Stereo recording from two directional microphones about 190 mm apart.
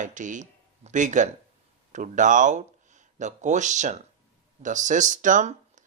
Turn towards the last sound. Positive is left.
turn(degrees=-40)  # may be behind; listen again after turning